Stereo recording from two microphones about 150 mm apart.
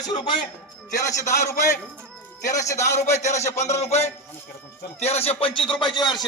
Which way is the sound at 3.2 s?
50° left (ahead or behind).